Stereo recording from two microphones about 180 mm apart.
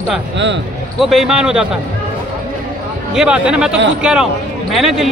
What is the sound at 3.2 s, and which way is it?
Speech, 5° right (ahead or behind).